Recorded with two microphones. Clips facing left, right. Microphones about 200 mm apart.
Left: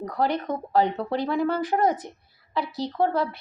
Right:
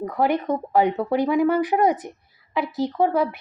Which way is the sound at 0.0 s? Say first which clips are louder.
Right 4 dB; 10° right (ahead or behind).